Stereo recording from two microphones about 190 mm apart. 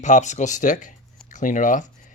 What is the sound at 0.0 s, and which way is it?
Speech, 40° left (ahead or behind).